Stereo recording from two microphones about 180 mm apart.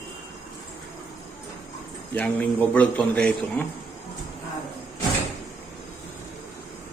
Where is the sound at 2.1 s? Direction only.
10° left (ahead or behind).